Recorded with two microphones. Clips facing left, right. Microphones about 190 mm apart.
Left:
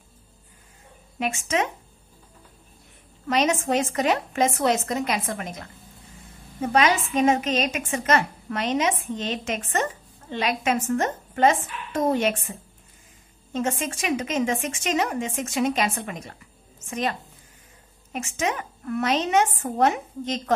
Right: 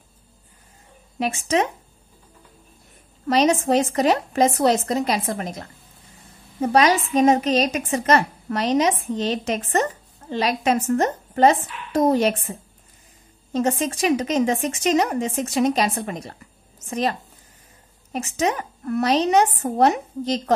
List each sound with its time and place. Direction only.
1.2 s a woman's voice: 35° right (ahead or behind)
3.3 s a woman's voice: 35° right (ahead or behind)
18.1 s a woman's voice: 35° right (ahead or behind)